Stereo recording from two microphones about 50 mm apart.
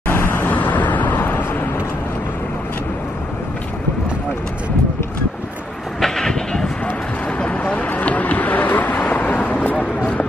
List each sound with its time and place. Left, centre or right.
0.1 s vehicle: left
0.6 s vehicle: left
1.1 s vehicle: left
5.9 s vehicle: centre
7.3 s vehicle: left